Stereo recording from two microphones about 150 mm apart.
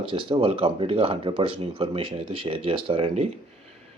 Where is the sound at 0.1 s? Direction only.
35° right (ahead or behind).